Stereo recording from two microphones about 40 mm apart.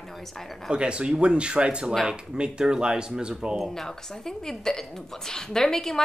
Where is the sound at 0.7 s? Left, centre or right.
Right.